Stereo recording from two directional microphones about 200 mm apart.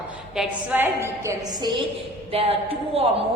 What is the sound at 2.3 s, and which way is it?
Speech, 30° right (ahead or behind).